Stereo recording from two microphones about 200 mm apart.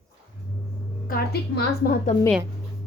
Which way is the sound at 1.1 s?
50° left (ahead or behind).